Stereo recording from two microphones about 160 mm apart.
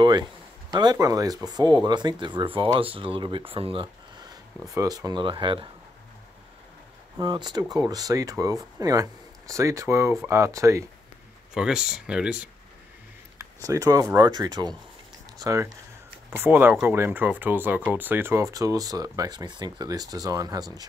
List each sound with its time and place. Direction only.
0.0 s speech: 25° right (ahead or behind)
7.2 s speech: 25° right (ahead or behind)
11.5 s speech: 5° right (ahead or behind)
13.7 s speech: 20° right (ahead or behind)